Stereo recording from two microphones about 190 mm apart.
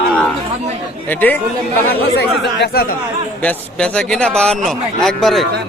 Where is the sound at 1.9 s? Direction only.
60° left (ahead or behind).